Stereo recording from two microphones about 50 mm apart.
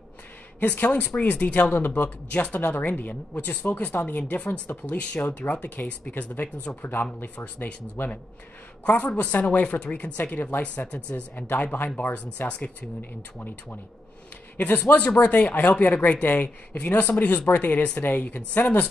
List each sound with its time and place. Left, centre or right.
0.6 s speech: left
1.7 s speech: left
4.5 s speech: left
4.9 s speech: left
11.4 s speech: left
12.4 s speech: left
14.6 s speech: left